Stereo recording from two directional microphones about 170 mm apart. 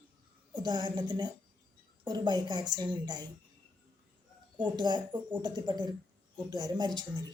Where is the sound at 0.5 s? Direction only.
25° right (ahead or behind).